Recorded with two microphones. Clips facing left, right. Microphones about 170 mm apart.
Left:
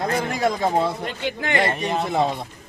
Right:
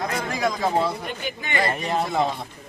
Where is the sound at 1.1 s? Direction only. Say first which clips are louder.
Left 4 dB; 90° left.